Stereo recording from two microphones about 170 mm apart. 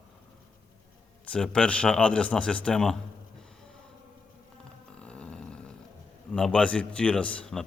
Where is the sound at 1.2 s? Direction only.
5° left (ahead or behind).